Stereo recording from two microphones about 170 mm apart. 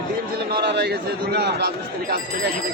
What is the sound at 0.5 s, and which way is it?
A man's voice, 80° right.